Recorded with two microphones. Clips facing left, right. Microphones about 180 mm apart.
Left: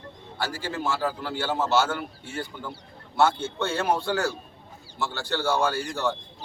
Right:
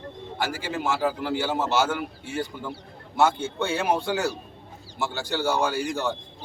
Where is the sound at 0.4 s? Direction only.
15° right (ahead or behind).